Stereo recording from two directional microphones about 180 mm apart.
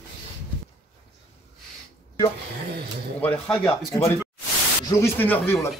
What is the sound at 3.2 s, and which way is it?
Speech, 5° left (ahead or behind).